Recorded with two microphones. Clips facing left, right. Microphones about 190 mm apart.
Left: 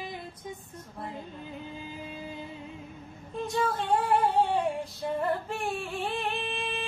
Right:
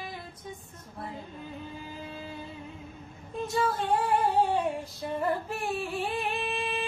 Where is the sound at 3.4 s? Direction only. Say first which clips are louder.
Even; centre (ahead or behind).